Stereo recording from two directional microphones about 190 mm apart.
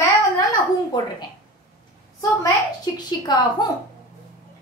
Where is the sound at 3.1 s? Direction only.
20° left (ahead or behind).